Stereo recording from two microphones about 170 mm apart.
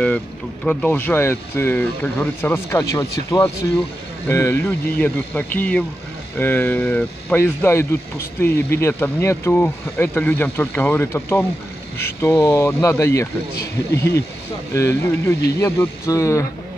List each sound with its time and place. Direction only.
0.7 s speech: 5° left (ahead or behind)